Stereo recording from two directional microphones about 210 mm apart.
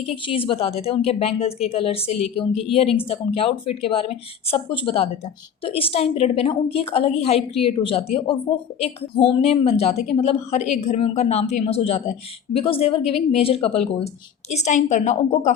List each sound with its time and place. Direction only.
0.3 s a woman's voice: 25° left (ahead or behind)